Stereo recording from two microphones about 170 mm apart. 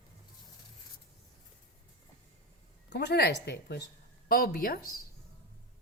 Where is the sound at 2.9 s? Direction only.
75° left (ahead or behind).